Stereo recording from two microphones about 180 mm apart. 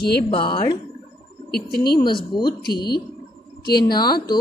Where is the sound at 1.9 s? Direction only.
25° left (ahead or behind).